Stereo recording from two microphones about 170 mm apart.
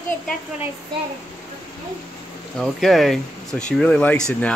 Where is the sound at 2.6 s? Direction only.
Centre (ahead or behind).